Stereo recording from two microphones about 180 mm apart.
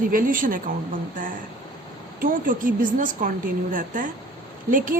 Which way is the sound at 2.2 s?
50° right (ahead or behind).